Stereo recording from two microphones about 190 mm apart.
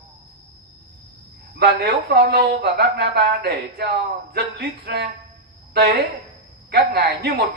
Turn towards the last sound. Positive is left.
turn(degrees=-55)  # may be behind; listen again after turning